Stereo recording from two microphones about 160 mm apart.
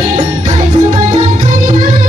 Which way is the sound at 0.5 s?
45° right (ahead or behind).